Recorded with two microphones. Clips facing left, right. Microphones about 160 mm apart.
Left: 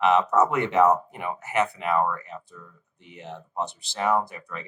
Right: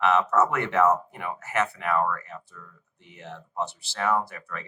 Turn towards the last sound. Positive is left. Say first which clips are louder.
# left 2 dB
turn(degrees=20)  # may be behind; listen again after turning